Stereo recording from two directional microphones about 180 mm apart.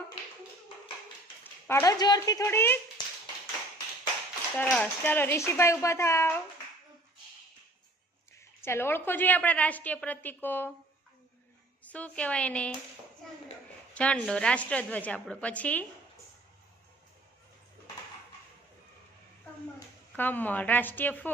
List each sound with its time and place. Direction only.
1.6 s a woman's voice: 15° left (ahead or behind)
4.5 s a woman's voice: 5° left (ahead or behind)
8.4 s a woman's voice: 15° left (ahead or behind)
11.8 s a woman's voice: 10° left (ahead or behind)
13.9 s a woman's voice: 5° left (ahead or behind)
20.1 s a woman's voice: 10° left (ahead or behind)